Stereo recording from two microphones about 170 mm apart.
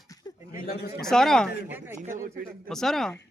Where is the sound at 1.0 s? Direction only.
5° left (ahead or behind).